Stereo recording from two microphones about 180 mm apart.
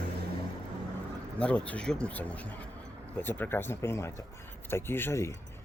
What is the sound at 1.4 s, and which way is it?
Speech, 5° left (ahead or behind).